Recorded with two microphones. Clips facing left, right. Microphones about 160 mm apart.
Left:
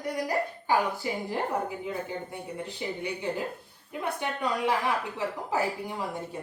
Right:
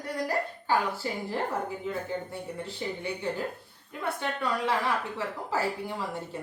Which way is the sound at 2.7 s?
15° left (ahead or behind).